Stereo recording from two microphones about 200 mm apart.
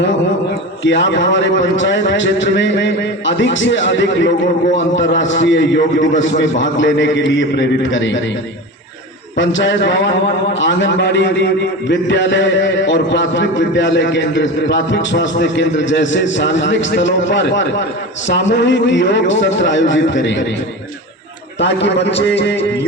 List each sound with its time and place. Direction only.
0.9 s a man's voice: 65° left (ahead or behind)
9.4 s a man's voice: 65° left (ahead or behind)
21.6 s a man's voice: 60° left (ahead or behind)